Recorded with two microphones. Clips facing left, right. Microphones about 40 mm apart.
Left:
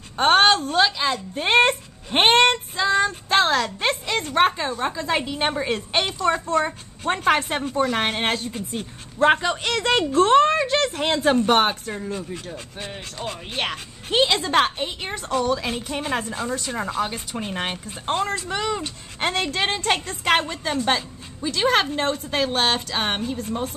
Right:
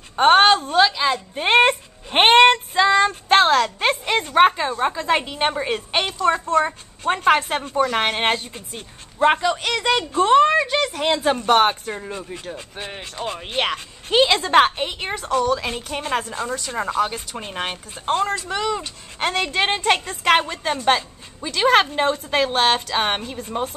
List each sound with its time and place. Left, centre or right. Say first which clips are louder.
0.1 s a woman's voice: right 3 dB; centre; by 2.6 s right
2.7 s female singing: right 4 dB; right
3.1 s speech: right 4 dB; right
3.4 s a woman's voice: right 4 dB; centre
3.9 s a woman's voice: right 4 dB; right
4.2 s a woman's voice: right 4 dB; centre
4.9 s a woman's voice: right 3 dB; right
6.0 s a woman's voice: right 2 dB; centre
8.5 s a woman's voice: left 5 dB; centre
14.4 s a woman's voice: right 4 dB; right
15.2 s a woman's voice: right 2 dB; centre
19.4 s a woman's voice: right 3 dB; centre